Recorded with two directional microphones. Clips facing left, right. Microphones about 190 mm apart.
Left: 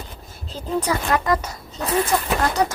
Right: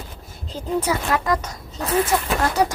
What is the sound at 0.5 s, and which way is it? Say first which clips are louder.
Speech: right 1 dB; 10° right (ahead or behind).